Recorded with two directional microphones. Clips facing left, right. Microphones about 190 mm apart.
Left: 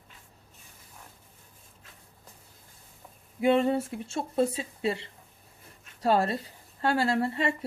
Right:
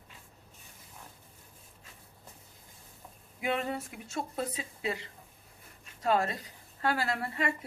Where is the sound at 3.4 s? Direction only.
30° left (ahead or behind).